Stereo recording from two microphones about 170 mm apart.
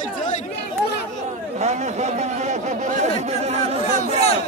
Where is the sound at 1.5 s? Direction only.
40° right (ahead or behind).